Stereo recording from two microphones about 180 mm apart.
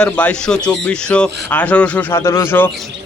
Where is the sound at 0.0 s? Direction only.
5° left (ahead or behind).